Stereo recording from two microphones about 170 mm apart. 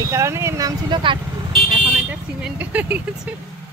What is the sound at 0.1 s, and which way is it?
Speech, 15° right (ahead or behind).